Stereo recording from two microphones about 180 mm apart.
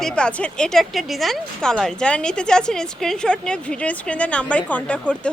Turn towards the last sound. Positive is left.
turn(degrees=5)  # may be behind; listen again after turning